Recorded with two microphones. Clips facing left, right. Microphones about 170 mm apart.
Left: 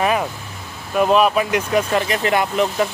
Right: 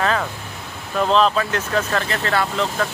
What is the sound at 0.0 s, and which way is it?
Vehicle, 15° left (ahead or behind).